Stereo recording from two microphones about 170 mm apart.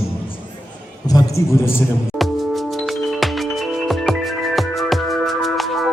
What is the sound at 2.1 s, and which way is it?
Music, centre (ahead or behind).